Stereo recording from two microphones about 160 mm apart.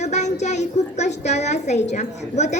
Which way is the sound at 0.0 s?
45° left (ahead or behind).